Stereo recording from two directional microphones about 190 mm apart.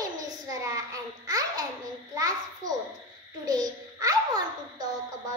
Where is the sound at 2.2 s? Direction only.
20° right (ahead or behind).